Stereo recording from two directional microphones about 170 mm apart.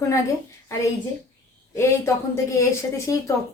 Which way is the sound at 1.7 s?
15° left (ahead or behind).